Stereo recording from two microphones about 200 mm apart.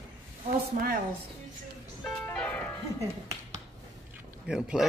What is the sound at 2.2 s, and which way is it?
Music, 5° left (ahead or behind).